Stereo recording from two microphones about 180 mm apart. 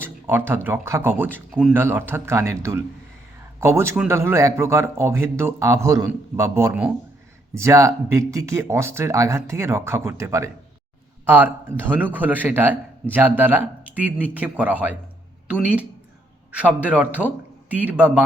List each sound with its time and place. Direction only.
0.0 s a man's voice: 10° right (ahead or behind)